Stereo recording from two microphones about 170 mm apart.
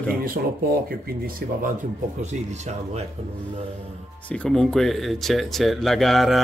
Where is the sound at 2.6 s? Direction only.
40° right (ahead or behind).